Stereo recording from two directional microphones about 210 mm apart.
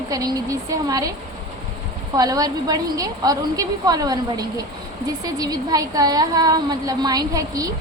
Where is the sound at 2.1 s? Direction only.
15° right (ahead or behind).